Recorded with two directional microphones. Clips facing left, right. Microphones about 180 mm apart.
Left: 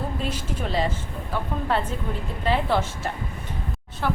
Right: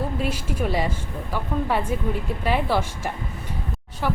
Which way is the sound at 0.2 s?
10° right (ahead or behind).